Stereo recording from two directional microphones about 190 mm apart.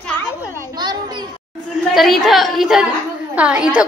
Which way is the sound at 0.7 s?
20° right (ahead or behind).